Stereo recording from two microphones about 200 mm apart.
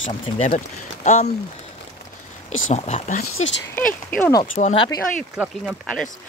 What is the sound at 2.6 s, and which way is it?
Speech, 35° left (ahead or behind).